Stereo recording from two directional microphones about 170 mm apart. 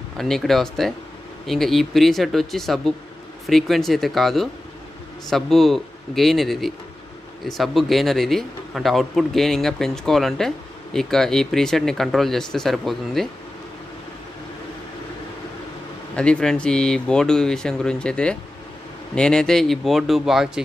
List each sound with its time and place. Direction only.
0.2 s speech: centre (ahead or behind)
16.2 s speech: 5° left (ahead or behind)